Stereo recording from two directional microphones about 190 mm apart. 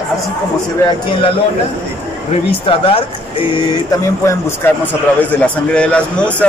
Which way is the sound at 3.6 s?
15° left (ahead or behind).